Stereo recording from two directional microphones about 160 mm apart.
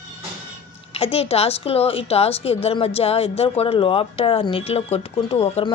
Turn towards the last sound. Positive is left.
turn(degrees=40)  # may be behind; listen again after turning